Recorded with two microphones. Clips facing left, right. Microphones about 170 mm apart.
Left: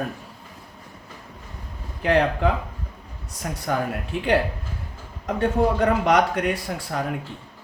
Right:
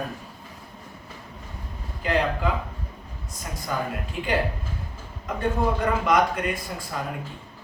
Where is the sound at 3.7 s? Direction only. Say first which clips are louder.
Left 4 dB; 65° left (ahead or behind).